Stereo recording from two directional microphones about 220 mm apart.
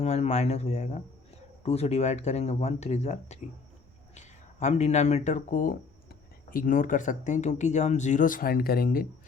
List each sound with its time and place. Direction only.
0.0 s speech: 30° left (ahead or behind)